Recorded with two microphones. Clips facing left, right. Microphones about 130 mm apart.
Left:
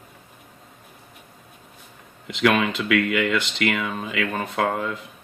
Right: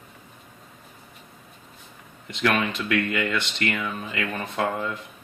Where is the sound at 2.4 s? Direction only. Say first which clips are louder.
Left 4 dB; 90° left.